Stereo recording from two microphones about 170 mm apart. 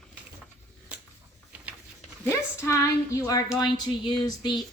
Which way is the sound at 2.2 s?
15° left (ahead or behind).